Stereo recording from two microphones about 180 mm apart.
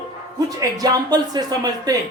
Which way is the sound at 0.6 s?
20° right (ahead or behind).